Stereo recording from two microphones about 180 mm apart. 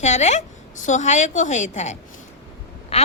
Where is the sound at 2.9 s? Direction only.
35° left (ahead or behind).